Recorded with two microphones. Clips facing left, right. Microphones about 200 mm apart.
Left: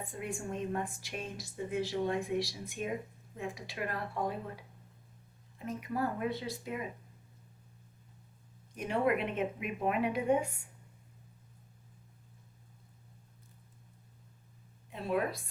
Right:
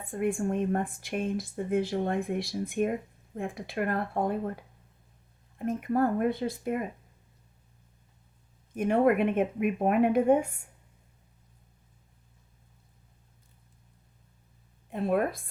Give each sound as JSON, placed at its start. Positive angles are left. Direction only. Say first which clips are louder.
{"t": 0.1, "sound": "speech", "louder": "right 13 dB", "side_deg": -55}
{"t": 8.7, "sound": "speech", "louder": "right 7 dB", "side_deg": -50}
{"t": 14.8, "sound": "speech", "louder": "right 6 dB", "side_deg": -50}